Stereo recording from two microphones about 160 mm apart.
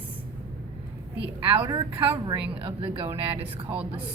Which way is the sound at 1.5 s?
30° right (ahead or behind).